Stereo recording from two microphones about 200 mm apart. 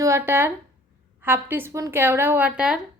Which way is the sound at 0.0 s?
15° right (ahead or behind).